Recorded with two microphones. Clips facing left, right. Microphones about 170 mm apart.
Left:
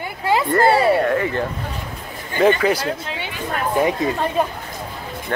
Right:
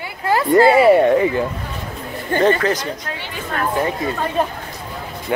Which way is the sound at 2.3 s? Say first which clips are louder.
Even; 10° left (ahead or behind).